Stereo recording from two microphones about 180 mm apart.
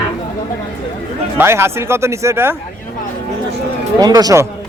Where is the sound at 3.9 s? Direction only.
20° right (ahead or behind).